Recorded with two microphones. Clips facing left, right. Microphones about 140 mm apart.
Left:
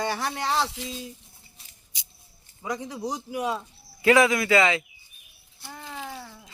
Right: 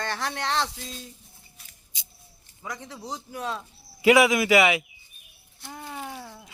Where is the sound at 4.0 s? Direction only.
15° right (ahead or behind).